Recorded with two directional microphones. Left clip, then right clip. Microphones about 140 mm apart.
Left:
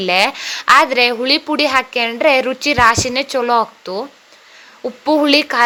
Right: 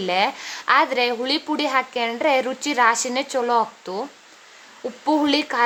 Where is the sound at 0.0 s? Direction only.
25° left (ahead or behind).